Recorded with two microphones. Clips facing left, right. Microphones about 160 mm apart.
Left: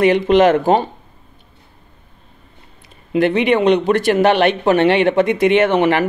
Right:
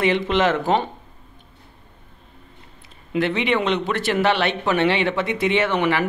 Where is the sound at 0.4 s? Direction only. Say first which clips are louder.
Left 7 dB; 50° left (ahead or behind).